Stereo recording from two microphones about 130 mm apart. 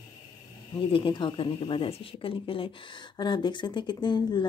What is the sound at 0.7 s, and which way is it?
A woman's voice, 45° left (ahead or behind).